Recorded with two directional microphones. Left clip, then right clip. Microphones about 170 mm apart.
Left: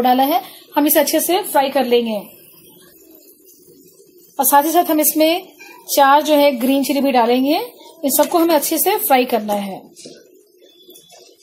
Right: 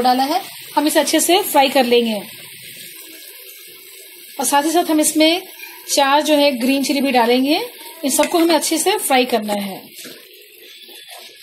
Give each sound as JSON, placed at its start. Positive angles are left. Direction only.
{"t": 0.0, "sound": "speech", "side_deg": 15}
{"t": 1.1, "sound": "speech", "side_deg": -15}
{"t": 4.4, "sound": "a woman's voice", "side_deg": 0}